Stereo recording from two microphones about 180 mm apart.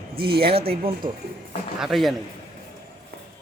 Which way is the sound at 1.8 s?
Centre (ahead or behind).